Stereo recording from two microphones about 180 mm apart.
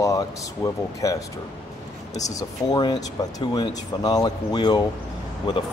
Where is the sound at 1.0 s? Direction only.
20° left (ahead or behind).